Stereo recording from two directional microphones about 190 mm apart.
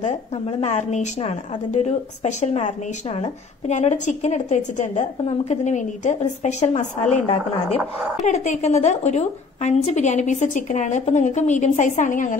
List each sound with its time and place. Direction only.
0.0 s a woman's voice: 35° left (ahead or behind)